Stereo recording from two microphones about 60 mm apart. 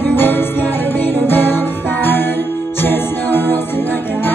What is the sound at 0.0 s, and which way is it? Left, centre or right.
Music, left.